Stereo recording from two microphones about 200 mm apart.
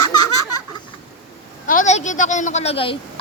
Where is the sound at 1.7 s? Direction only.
40° left (ahead or behind).